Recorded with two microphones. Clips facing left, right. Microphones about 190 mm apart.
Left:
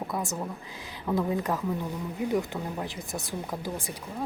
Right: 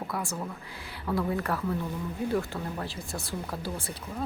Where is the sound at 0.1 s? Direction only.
20° left (ahead or behind).